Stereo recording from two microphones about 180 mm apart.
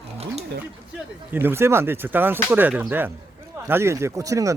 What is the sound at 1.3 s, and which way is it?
Speech, 10° right (ahead or behind).